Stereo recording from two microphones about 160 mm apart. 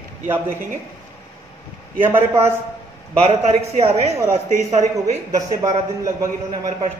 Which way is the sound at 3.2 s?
40° right (ahead or behind).